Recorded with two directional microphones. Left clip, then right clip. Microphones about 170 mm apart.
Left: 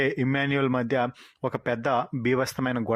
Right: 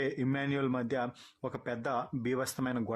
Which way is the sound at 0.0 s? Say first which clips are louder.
Left 8 dB; 30° left (ahead or behind).